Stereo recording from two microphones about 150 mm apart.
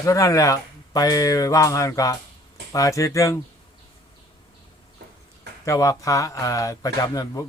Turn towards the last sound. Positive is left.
turn(degrees=25)  # may be behind; listen again after turning